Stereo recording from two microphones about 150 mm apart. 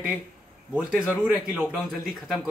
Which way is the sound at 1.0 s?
15° left (ahead or behind).